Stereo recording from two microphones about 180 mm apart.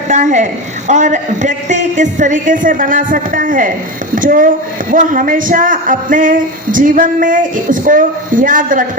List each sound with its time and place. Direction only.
0.1 s a woman's voice: 40° right (ahead or behind)